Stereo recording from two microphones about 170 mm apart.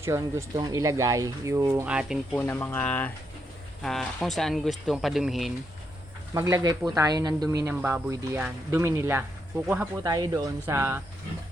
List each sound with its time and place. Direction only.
0.0 s speech: 15° right (ahead or behind)
2.3 s speech: 15° left (ahead or behind); by 5.5 s centre (ahead or behind)
6.3 s speech: 15° right (ahead or behind)
8.1 s speech: 20° right (ahead or behind)
10.0 s speech: 20° right (ahead or behind)